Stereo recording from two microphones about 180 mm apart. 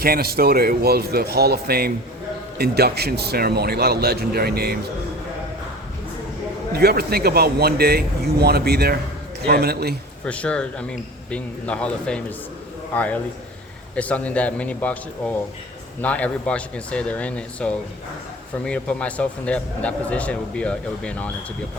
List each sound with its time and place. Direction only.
0.0 s speech: 60° right (ahead or behind)
6.7 s speech: 60° right (ahead or behind)
10.2 s a man's voice: 5° left (ahead or behind)